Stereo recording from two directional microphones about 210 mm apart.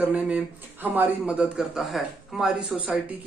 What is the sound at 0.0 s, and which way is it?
A man's voice, 5° right (ahead or behind).